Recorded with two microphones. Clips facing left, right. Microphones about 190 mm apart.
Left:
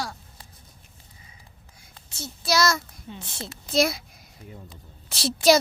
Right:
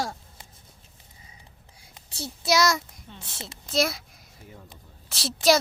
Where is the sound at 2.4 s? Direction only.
15° right (ahead or behind).